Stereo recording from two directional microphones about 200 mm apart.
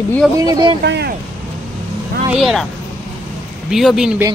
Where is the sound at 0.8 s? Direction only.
60° right (ahead or behind).